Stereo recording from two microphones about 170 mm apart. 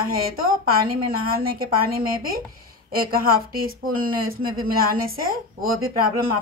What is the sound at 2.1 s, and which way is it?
Speech, 60° right (ahead or behind).